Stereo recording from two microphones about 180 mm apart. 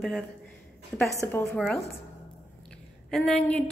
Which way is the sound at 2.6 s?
5° left (ahead or behind).